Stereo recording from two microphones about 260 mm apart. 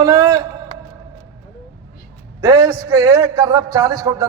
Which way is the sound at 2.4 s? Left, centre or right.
Centre.